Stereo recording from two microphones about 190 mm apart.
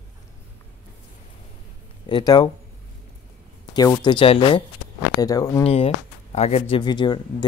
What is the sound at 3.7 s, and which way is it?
Speech, 20° left (ahead or behind).